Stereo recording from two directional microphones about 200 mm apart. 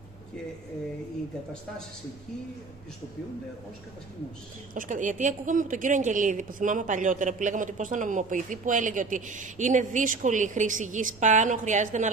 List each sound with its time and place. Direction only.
4.7 s a woman's voice: 40° right (ahead or behind)